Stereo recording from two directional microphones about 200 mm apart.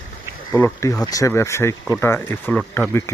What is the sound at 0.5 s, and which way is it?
Speech, 15° left (ahead or behind).